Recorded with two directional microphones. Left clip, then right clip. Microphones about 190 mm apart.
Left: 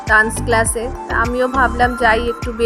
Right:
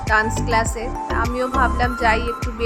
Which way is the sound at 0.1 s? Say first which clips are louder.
Left 5 dB; 15° left (ahead or behind).